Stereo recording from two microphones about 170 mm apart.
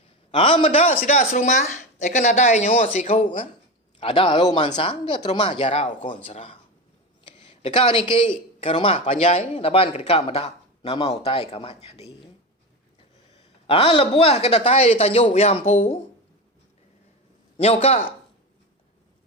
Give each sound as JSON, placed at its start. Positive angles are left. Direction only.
{"t": 0.3, "sound": "speech", "side_deg": 30}
{"t": 1.0, "sound": "speech", "side_deg": 50}
{"t": 4.0, "sound": "speech", "side_deg": 30}
{"t": 7.6, "sound": "speech", "side_deg": 30}
{"t": 13.3, "sound": "speech", "side_deg": 35}
{"t": 17.6, "sound": "speech", "side_deg": 35}